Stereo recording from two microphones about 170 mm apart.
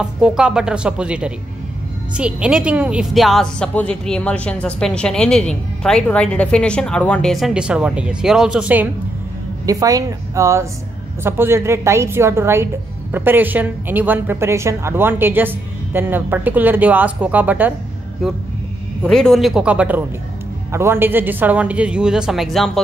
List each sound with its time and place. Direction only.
0.0 s a woman's voice: 5° right (ahead or behind)
9.7 s a woman's voice: 20° right (ahead or behind)
19.0 s a woman's voice: 5° left (ahead or behind)